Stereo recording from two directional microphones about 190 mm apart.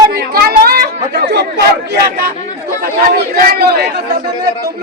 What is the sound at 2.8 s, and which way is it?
Speech, 50° right (ahead or behind).